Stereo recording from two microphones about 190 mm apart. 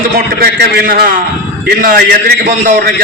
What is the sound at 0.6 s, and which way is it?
A man's voice, 55° right (ahead or behind).